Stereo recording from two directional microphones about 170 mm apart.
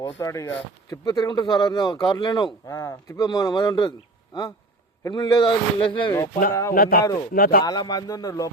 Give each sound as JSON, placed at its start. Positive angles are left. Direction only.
{"t": 0.2, "sound": "speech", "side_deg": 20}
{"t": 5.0, "sound": "speech", "side_deg": 25}
{"t": 6.5, "sound": "speech", "side_deg": 20}
{"t": 6.7, "sound": "speech", "side_deg": 60}
{"t": 7.6, "sound": "speech", "side_deg": 25}